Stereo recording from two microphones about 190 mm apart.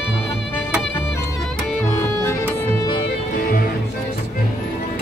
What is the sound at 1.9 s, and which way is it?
Music, 15° left (ahead or behind).